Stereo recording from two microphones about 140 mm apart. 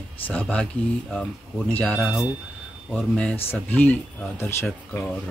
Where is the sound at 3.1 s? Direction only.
10° left (ahead or behind).